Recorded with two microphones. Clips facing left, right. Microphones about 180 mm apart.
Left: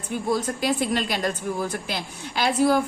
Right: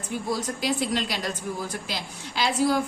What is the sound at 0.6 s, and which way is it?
A woman's voice, 50° left (ahead or behind).